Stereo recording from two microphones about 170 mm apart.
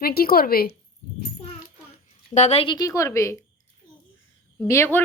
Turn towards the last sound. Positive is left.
turn(degrees=15)  # may be behind; listen again after turning